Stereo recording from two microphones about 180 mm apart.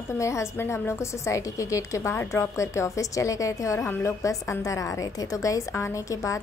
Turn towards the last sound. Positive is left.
turn(degrees=20)  # may be behind; listen again after turning